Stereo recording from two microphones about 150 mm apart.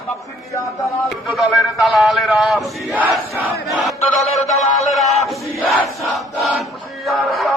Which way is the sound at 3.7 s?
Centre (ahead or behind).